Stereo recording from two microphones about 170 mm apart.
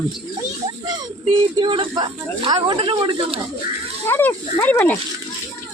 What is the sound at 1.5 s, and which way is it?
Speech, 30° right (ahead or behind).